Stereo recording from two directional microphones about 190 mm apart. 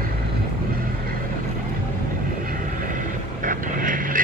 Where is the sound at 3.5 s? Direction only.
45° right (ahead or behind).